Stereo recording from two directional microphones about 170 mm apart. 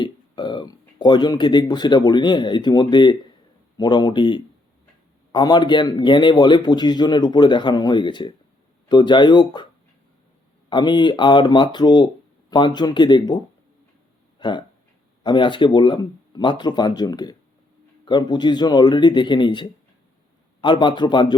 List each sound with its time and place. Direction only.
0.0 s a man's voice: 25° left (ahead or behind)
10.7 s a man's voice: 25° left (ahead or behind)